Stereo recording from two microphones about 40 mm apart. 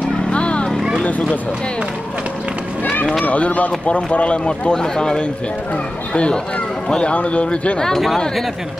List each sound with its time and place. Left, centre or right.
0.3 s vehicle: left
3.3 s speech: left